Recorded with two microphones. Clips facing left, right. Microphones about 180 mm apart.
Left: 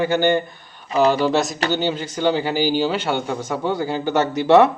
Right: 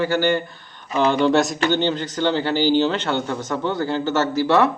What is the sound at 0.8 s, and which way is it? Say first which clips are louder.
Speech: left 3 dB; 30° left (ahead or behind).